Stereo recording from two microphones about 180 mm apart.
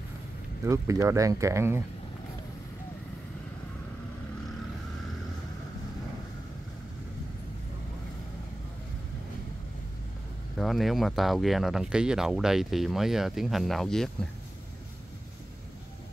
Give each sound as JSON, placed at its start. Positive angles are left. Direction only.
{"t": 0.7, "sound": "speech", "side_deg": -15}
{"t": 10.6, "sound": "speech", "side_deg": 0}